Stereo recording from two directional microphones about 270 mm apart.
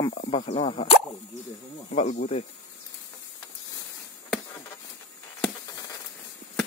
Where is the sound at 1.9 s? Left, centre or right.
Left.